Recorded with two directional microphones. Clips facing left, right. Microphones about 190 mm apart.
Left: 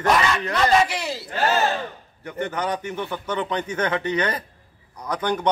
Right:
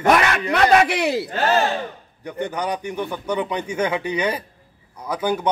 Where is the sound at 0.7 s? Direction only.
65° right (ahead or behind).